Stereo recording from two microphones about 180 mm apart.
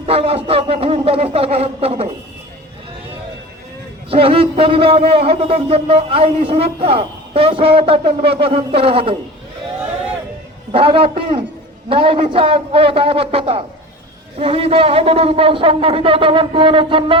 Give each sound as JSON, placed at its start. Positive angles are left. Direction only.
{"t": 0.0, "sound": "speech", "side_deg": -35}
{"t": 4.1, "sound": "a man's voice", "side_deg": -30}
{"t": 10.7, "sound": "a man's voice", "side_deg": -30}